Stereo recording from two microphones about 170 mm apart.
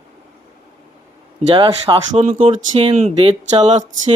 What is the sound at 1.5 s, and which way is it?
Speech, 30° right (ahead or behind).